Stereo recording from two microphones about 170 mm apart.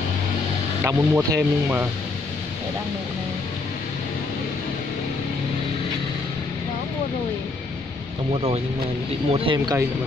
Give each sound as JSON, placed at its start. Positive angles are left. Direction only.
{"t": 0.8, "sound": "speech", "side_deg": -15}
{"t": 8.3, "sound": "speech", "side_deg": -35}